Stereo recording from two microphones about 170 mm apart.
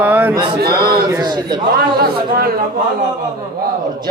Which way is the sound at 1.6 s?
65° right (ahead or behind).